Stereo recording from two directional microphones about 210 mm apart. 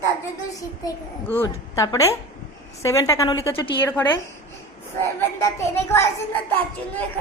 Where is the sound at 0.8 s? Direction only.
15° left (ahead or behind).